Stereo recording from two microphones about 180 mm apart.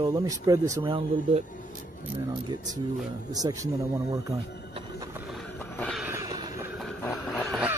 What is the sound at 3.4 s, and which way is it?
Speech, 25° right (ahead or behind).